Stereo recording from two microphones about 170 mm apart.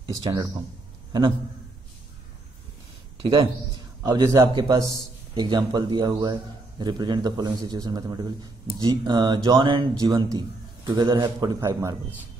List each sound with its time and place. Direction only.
0.0 s a man's voice: 20° right (ahead or behind)
3.2 s a man's voice: 25° right (ahead or behind)